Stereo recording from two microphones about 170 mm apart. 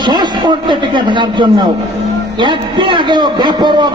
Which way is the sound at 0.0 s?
25° right (ahead or behind).